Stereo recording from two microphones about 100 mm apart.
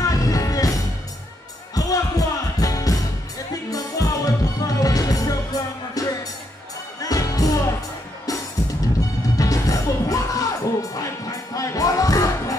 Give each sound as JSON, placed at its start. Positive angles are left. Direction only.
{"t": 0.1, "sound": "music", "side_deg": 35}
{"t": 1.8, "sound": "music", "side_deg": 35}